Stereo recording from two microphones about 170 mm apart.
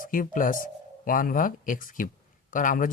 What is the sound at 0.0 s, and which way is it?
Speech, 55° left (ahead or behind).